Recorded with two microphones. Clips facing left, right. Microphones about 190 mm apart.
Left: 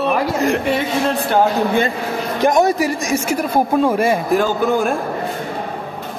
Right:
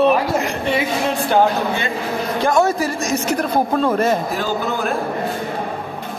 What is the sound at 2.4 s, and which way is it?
A man's voice, 15° left (ahead or behind).